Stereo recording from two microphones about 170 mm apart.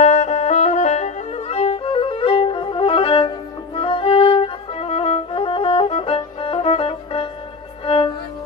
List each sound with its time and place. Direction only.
0.0 s music: 45° left (ahead or behind)